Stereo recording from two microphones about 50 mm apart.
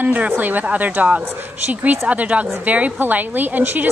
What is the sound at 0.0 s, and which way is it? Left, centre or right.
A woman's voice, right.